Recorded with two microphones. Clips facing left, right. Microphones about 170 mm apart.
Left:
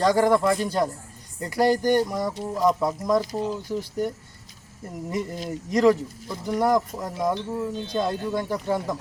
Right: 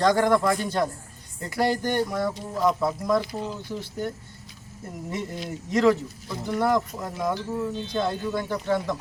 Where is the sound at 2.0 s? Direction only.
15° left (ahead or behind).